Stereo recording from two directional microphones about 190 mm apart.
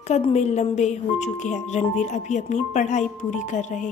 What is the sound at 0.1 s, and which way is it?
Speech, 35° left (ahead or behind).